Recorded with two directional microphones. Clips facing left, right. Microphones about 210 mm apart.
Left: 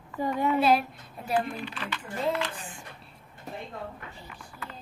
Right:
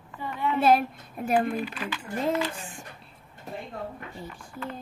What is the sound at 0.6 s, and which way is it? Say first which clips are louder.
Speech: right 6 dB; 50° right (ahead or behind).